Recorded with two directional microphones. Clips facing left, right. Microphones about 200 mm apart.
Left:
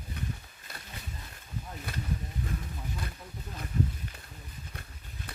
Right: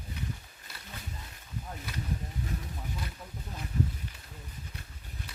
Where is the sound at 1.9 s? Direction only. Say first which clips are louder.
Left 1 dB; 55° left (ahead or behind).